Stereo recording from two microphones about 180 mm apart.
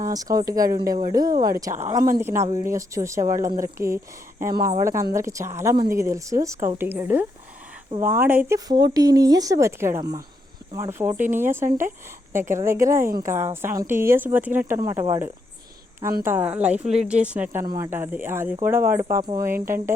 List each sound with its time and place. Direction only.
0.0 s speech: 20° right (ahead or behind)
16.2 s speech: 10° right (ahead or behind)